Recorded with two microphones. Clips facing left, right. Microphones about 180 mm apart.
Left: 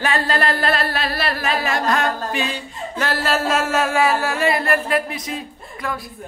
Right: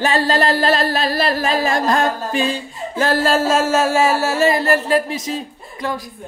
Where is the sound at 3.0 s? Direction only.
45° right (ahead or behind).